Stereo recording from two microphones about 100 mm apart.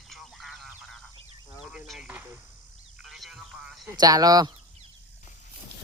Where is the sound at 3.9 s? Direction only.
40° right (ahead or behind).